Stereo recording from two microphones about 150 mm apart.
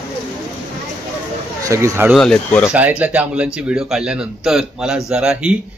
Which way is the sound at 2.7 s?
10° right (ahead or behind).